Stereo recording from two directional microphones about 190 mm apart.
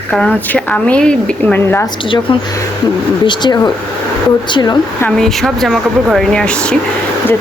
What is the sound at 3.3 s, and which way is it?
Speech, 20° left (ahead or behind).